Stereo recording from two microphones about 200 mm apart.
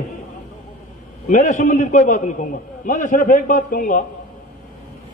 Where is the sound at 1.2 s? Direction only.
40° left (ahead or behind).